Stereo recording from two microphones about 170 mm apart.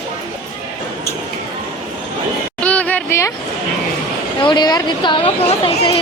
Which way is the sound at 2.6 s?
10° left (ahead or behind).